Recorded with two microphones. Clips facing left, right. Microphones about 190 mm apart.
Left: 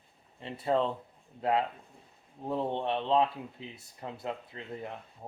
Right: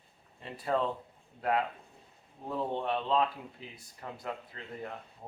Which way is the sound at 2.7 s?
25° left (ahead or behind).